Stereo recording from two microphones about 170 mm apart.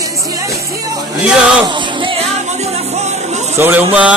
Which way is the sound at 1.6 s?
30° right (ahead or behind).